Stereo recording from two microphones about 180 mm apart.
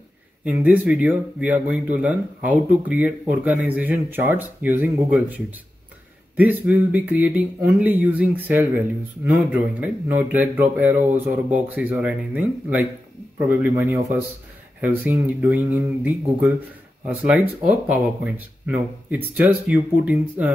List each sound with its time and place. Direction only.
0.5 s a man's voice: 10° right (ahead or behind)
19.0 s a man's voice: 10° right (ahead or behind)